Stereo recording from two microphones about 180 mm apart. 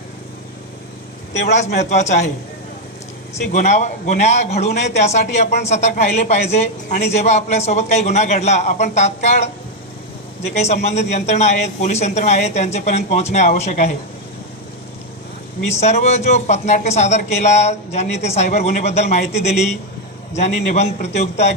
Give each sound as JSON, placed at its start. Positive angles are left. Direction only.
{"t": 1.4, "sound": "a man's voice", "side_deg": 40}
{"t": 3.5, "sound": "a man's voice", "side_deg": 40}
{"t": 15.7, "sound": "a man's voice", "side_deg": 40}